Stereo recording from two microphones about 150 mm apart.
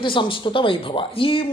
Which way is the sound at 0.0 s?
35° left (ahead or behind).